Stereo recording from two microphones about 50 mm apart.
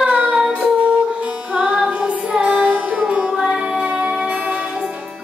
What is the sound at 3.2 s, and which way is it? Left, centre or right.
Music, centre.